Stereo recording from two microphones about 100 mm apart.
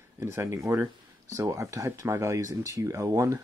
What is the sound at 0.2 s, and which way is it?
Speech, 25° right (ahead or behind).